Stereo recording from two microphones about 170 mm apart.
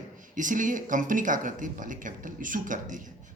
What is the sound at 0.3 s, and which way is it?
A woman's voice, 50° right (ahead or behind).